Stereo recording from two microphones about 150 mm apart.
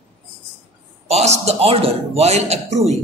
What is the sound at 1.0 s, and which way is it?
A man's voice, 45° right (ahead or behind).